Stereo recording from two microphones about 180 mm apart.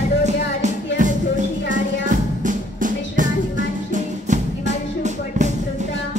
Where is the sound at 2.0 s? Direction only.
45° right (ahead or behind).